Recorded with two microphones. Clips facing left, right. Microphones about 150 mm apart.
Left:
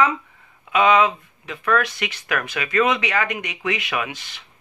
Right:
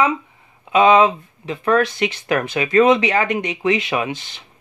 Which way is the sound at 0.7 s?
30° right (ahead or behind).